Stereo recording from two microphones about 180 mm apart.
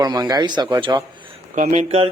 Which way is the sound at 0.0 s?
20° right (ahead or behind).